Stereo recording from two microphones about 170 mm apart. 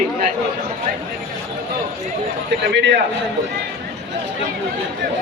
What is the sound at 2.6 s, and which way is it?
Speech, 90° right.